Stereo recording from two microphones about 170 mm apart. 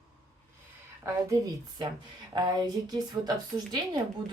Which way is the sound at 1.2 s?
20° right (ahead or behind).